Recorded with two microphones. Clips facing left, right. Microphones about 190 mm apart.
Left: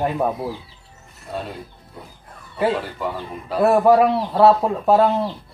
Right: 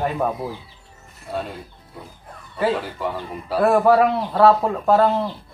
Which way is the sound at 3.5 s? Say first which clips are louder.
Left 1 dB; centre (ahead or behind).